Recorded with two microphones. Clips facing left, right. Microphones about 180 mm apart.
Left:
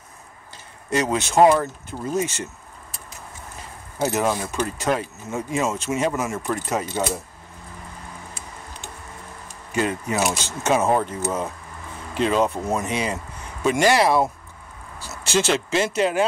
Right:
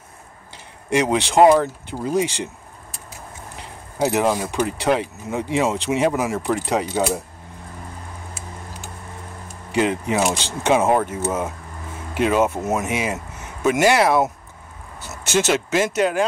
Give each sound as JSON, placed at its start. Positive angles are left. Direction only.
{"t": 0.8, "sound": "speech", "side_deg": -10}
{"t": 3.5, "sound": "speech", "side_deg": -15}
{"t": 9.8, "sound": "speech", "side_deg": -15}
{"t": 15.4, "sound": "speech", "side_deg": -5}